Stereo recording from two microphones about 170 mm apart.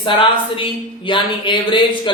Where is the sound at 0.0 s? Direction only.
30° left (ahead or behind).